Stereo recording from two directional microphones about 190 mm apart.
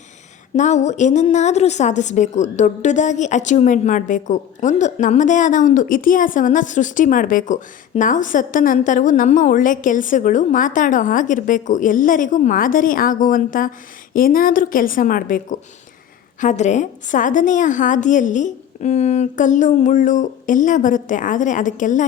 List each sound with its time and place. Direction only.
0.5 s a woman's voice: 40° left (ahead or behind)